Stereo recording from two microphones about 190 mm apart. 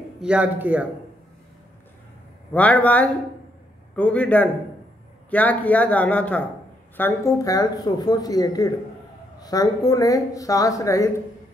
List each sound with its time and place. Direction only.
0.2 s a man's voice: 5° right (ahead or behind)
2.5 s speech: 10° left (ahead or behind)